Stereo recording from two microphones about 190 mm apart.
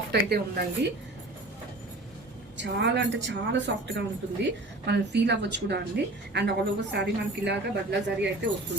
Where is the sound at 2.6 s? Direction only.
70° right (ahead or behind).